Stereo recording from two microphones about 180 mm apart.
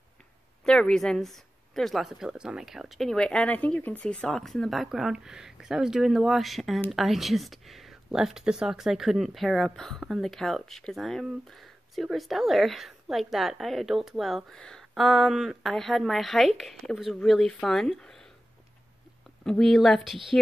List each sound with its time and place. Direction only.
0.7 s speech: 5° left (ahead or behind)
19.4 s speech: centre (ahead or behind)